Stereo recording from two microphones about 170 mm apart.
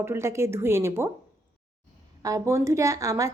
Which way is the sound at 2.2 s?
15° right (ahead or behind).